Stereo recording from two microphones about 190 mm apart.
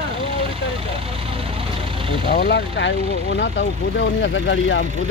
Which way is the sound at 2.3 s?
60° left (ahead or behind).